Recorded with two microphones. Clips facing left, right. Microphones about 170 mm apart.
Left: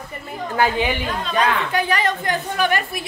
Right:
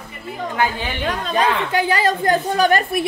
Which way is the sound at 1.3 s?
25° right (ahead or behind).